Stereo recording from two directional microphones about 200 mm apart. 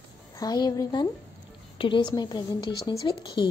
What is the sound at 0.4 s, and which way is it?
A woman's voice, 20° left (ahead or behind).